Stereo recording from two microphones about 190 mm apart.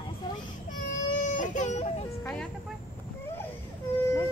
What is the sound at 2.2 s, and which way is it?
Speech, 10° left (ahead or behind).